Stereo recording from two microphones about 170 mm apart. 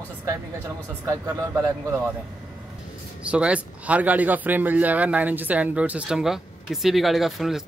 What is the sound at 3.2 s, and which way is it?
Speech, 5° right (ahead or behind).